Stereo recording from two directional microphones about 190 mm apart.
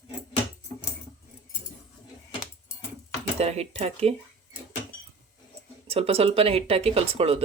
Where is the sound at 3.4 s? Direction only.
35° right (ahead or behind).